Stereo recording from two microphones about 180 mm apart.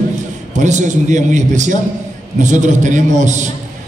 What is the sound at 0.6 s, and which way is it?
A man's voice, 40° right (ahead or behind).